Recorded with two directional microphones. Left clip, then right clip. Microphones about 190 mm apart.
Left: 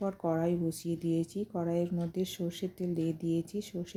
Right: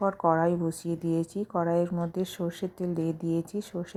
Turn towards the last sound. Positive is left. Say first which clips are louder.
# right 4 dB
turn(degrees=0)  # may be behind; listen again after turning